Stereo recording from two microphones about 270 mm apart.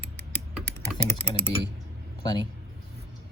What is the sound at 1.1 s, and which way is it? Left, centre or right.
Speech, centre.